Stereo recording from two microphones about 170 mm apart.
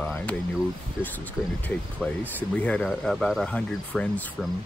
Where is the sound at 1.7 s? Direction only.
10° left (ahead or behind).